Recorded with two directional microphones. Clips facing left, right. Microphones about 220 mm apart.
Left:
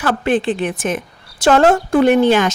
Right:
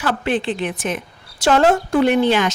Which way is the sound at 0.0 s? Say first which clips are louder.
Left 4 dB; 45° left (ahead or behind).